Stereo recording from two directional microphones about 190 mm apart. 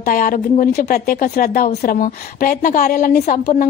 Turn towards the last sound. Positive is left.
turn(degrees=45)  # may be behind; listen again after turning